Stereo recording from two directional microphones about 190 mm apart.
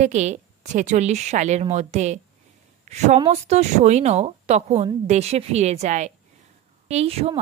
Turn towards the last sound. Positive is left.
turn(degrees=-35)  # may be behind; listen again after turning